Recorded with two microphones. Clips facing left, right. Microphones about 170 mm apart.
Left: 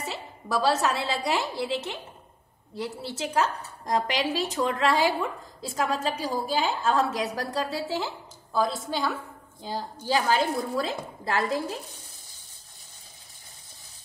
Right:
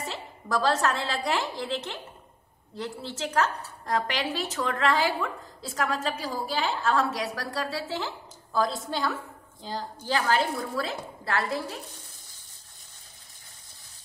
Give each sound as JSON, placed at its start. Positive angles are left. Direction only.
{"t": 0.0, "sound": "a woman's voice", "side_deg": 5}
{"t": 8.5, "sound": "a woman's voice", "side_deg": 0}